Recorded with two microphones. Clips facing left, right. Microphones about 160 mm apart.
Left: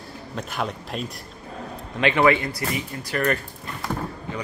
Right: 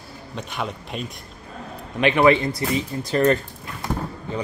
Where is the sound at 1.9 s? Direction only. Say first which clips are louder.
Right 2 dB; 15° right (ahead or behind).